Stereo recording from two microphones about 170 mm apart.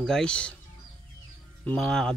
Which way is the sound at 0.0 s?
5° left (ahead or behind).